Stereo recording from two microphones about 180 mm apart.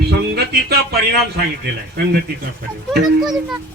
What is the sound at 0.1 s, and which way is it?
Speech, 65° right (ahead or behind).